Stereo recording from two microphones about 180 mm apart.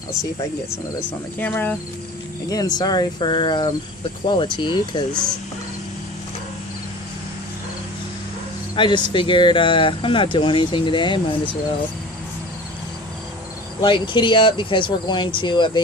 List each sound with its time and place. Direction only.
1.4 s cricket: 10° left (ahead or behind)
2.5 s speech: 20° left (ahead or behind)
8.7 s speech: 25° left (ahead or behind)
13.8 s speech: 25° left (ahead or behind)